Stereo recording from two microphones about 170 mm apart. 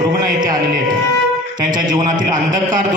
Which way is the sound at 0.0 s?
25° right (ahead or behind).